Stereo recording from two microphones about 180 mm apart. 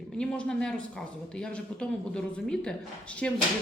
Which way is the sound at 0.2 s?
5° left (ahead or behind).